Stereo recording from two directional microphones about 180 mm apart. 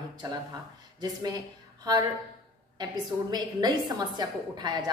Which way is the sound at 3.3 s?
20° right (ahead or behind).